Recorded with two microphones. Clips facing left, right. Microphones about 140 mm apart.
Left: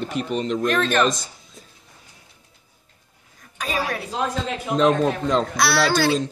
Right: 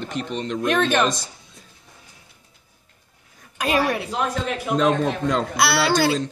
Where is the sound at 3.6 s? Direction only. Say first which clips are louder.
Right 5 dB; 65° right (ahead or behind).